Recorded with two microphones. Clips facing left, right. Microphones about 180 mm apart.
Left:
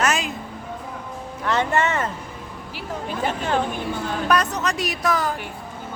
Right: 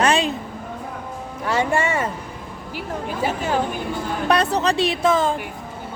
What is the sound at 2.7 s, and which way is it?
Speech, 10° right (ahead or behind).